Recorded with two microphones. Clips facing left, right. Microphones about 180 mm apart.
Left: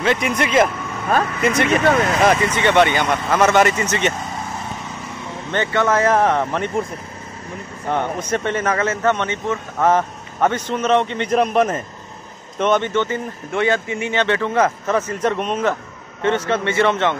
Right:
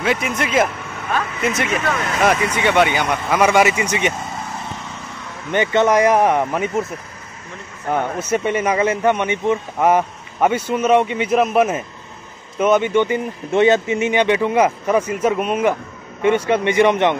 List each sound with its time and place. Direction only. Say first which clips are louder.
0.0 s speech: left 1 dB; 5° right (ahead or behind)
1.9 s speech: left 6 dB; 45° left (ahead or behind)
2.2 s speech: right 2 dB; 10° right (ahead or behind)
5.5 s speech: right 3 dB; 15° right (ahead or behind)
7.9 s speech: right 2 dB; 10° right (ahead or behind)